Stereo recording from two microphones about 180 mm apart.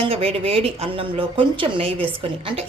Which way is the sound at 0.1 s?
30° right (ahead or behind).